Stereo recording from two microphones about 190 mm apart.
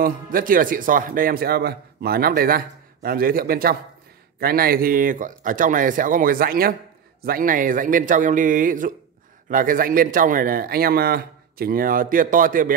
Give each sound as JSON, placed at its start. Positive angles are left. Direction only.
{"t": 0.0, "sound": "speech", "side_deg": -45}